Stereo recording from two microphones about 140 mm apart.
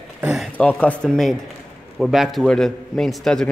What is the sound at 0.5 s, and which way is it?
A man's voice, 10° left (ahead or behind).